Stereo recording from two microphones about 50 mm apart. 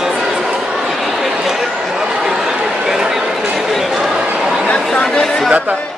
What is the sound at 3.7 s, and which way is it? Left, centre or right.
Chatter, centre.